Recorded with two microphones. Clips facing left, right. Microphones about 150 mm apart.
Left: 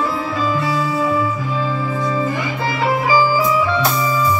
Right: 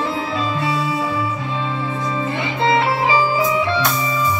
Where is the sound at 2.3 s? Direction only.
25° right (ahead or behind).